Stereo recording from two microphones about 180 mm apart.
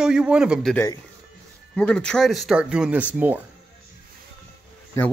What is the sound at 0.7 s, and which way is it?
Speech, 15° left (ahead or behind).